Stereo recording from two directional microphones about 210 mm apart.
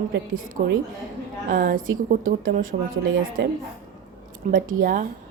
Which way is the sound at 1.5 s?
45° right (ahead or behind).